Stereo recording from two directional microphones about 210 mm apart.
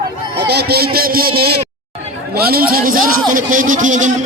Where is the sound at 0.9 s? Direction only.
45° right (ahead or behind).